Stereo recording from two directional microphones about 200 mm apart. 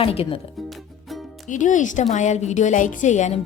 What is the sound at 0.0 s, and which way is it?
Speech, 30° left (ahead or behind).